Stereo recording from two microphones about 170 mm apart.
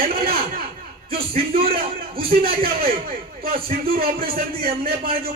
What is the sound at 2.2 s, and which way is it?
Speech, 60° right (ahead or behind).